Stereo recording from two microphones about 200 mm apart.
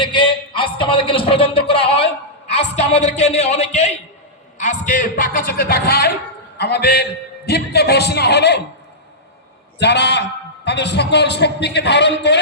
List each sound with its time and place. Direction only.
0.0 s a sound: 25° left (ahead or behind)
2.7 s a man's voice: 35° left (ahead or behind); by 8.6 s 55° left (ahead or behind)
9.7 s a man's voice: 60° left (ahead or behind)